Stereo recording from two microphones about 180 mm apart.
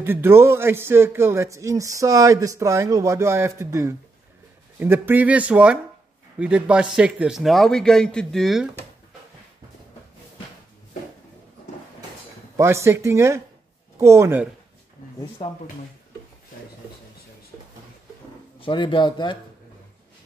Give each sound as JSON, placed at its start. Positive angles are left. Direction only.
{"t": 0.0, "sound": "a man's voice", "side_deg": -10}
{"t": 12.5, "sound": "speech", "side_deg": -15}
{"t": 15.4, "sound": "speech", "side_deg": 35}
{"t": 18.6, "sound": "speech", "side_deg": 25}